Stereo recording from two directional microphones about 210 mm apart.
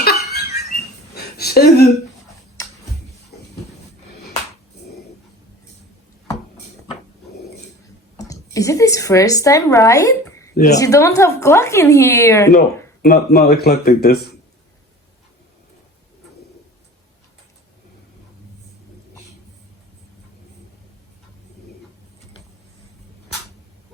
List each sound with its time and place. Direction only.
0.0 s a sound: 50° left (ahead or behind)
2.6 s tick-tock: 15° left (ahead or behind)
8.2 s speech: 15° left (ahead or behind)
10.5 s speech: 35° left (ahead or behind)
10.8 s a woman's voice: 15° left (ahead or behind)
13.0 s speech: 45° left (ahead or behind)